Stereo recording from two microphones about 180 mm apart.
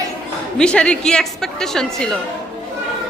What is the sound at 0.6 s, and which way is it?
A woman's voice, 5° left (ahead or behind).